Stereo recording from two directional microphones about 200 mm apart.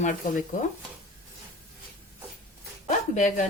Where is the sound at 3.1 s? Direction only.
40° left (ahead or behind).